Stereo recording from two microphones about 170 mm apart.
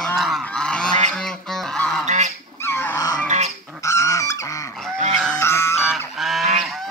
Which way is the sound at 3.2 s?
45° right (ahead or behind).